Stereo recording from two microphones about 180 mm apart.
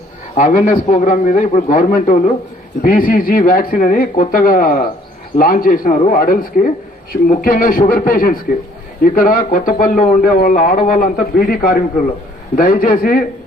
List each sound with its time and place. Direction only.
0.3 s speech: 45° left (ahead or behind)